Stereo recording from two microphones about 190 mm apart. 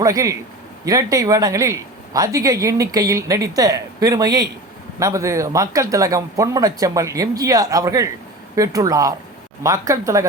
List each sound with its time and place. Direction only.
0.0 s speech: 15° right (ahead or behind)